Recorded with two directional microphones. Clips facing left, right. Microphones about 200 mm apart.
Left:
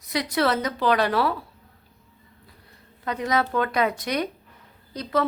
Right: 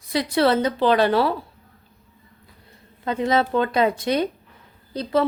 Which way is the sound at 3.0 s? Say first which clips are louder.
Right 4 dB; 25° right (ahead or behind).